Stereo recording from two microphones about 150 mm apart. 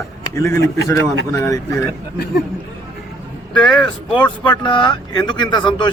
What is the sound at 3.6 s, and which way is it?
Speech, 5° left (ahead or behind).